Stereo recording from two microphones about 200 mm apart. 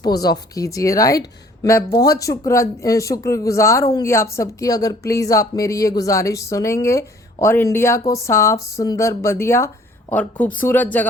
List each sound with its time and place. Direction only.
0.0 s speech: 20° left (ahead or behind)